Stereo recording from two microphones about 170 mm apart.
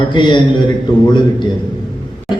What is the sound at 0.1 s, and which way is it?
Speech, 30° left (ahead or behind).